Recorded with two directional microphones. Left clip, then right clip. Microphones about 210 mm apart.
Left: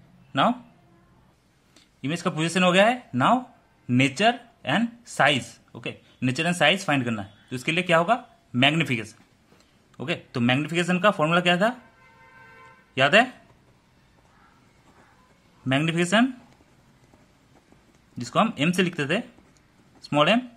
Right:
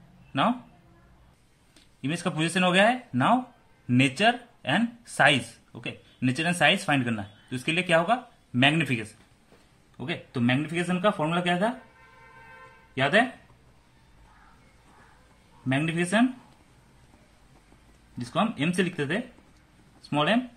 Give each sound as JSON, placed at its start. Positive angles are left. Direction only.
{"t": 0.3, "sound": "speech", "side_deg": 20}
{"t": 2.0, "sound": "speech", "side_deg": 20}
{"t": 12.9, "sound": "speech", "side_deg": 30}
{"t": 15.7, "sound": "speech", "side_deg": 30}
{"t": 18.1, "sound": "speech", "side_deg": 30}